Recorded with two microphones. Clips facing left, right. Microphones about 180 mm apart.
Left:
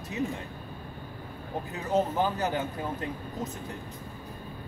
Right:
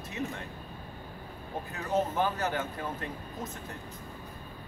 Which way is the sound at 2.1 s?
15° left (ahead or behind).